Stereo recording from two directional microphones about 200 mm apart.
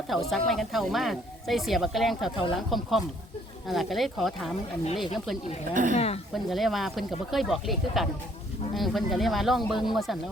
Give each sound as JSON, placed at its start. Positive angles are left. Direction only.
{"t": 0.1, "sound": "speech", "side_deg": 0}
{"t": 5.7, "sound": "speech", "side_deg": -40}
{"t": 6.3, "sound": "speech", "side_deg": 0}